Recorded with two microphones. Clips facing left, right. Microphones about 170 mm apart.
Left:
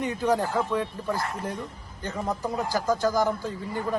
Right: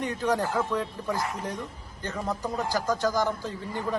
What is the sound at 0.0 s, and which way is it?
A man's voice, 10° left (ahead or behind).